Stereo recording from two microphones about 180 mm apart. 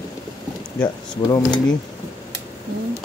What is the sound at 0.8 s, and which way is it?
Speech, 20° left (ahead or behind).